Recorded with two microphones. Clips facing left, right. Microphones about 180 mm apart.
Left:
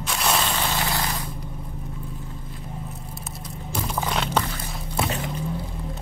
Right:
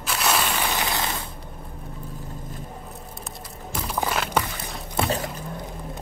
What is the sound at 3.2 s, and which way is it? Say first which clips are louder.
Vehicle: left 1 dB; 5° right (ahead or behind).